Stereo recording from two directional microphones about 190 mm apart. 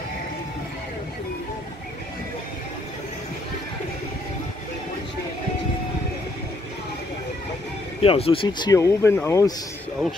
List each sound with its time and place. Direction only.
8.0 s speech: 30° left (ahead or behind); by 9.5 s 15° left (ahead or behind)